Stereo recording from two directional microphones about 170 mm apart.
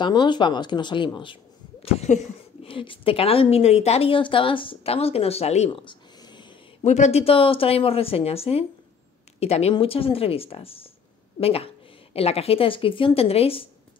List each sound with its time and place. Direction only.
0.0 s speech: 25° left (ahead or behind)
6.8 s a woman's voice: 40° left (ahead or behind)